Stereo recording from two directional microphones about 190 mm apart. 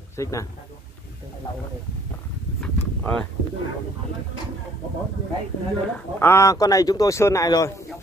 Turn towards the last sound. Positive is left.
turn(degrees=20)  # may be behind; listen again after turning